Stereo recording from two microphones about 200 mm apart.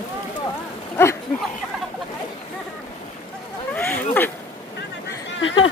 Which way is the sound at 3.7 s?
10° left (ahead or behind).